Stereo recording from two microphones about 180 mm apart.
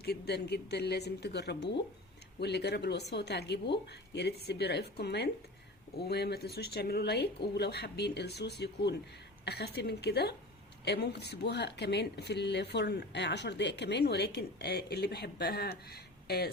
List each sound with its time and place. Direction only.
0.0 s speech: 65° left (ahead or behind)